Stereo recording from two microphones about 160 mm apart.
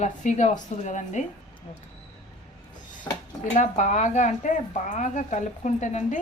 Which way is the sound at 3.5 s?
45° left (ahead or behind).